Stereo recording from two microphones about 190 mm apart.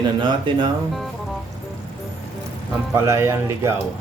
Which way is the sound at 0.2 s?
25° right (ahead or behind).